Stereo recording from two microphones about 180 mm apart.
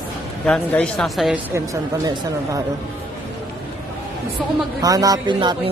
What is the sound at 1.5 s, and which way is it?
Speech, 20° right (ahead or behind).